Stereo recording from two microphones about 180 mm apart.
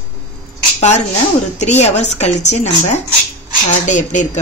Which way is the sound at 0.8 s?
40° left (ahead or behind).